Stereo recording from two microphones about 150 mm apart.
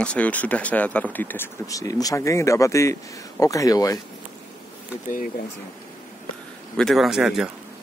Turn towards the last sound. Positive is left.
turn(degrees=-5)  # may be behind; listen again after turning